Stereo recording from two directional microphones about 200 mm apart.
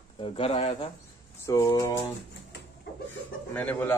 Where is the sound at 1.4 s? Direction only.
15° left (ahead or behind).